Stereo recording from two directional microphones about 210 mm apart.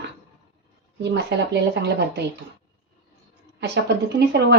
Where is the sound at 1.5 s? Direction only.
55° right (ahead or behind).